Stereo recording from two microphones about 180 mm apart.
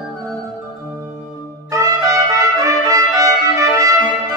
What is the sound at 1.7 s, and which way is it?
Trumpet, 20° right (ahead or behind).